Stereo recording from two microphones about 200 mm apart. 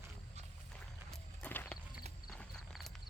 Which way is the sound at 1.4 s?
10° left (ahead or behind).